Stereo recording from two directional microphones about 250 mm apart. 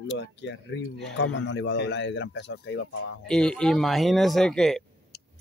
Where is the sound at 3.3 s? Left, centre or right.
Centre.